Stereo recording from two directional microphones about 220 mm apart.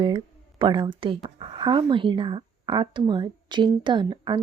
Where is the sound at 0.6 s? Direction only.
20° right (ahead or behind).